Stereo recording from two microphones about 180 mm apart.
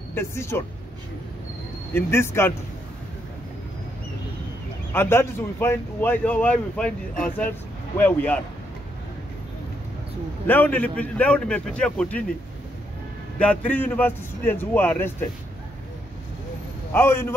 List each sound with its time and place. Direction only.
0.1 s a man's voice: 15° left (ahead or behind)
2.0 s a man's voice: 15° left (ahead or behind)
4.9 s a man's voice: 15° left (ahead or behind)
10.4 s a man's voice: 10° left (ahead or behind)
13.4 s a man's voice: 10° left (ahead or behind)
16.9 s a man's voice: 10° left (ahead or behind)